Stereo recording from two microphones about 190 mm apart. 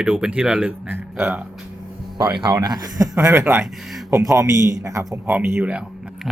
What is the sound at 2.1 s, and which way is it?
A man's voice, 20° right (ahead or behind).